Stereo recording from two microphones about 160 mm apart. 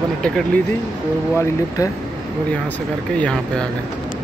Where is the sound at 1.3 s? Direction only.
20° left (ahead or behind).